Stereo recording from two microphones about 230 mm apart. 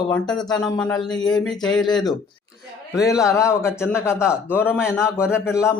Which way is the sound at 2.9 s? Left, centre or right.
Centre.